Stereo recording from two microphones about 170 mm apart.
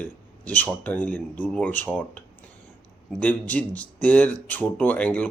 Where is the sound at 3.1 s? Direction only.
10° left (ahead or behind).